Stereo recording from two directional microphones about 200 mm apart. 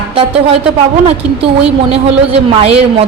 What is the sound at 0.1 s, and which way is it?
Speech, 30° right (ahead or behind).